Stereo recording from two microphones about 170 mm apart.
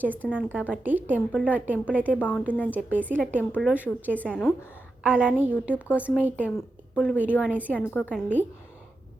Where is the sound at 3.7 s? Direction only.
10° right (ahead or behind).